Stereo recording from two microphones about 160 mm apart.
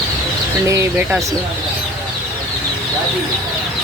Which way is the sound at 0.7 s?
20° right (ahead or behind).